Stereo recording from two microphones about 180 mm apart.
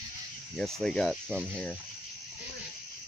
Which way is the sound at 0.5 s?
5° left (ahead or behind).